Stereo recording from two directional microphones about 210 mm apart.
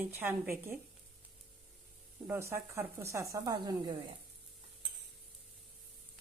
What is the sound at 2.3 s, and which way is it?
Speech, 10° right (ahead or behind).